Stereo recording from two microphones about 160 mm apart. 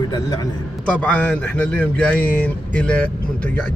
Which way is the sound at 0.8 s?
10° left (ahead or behind).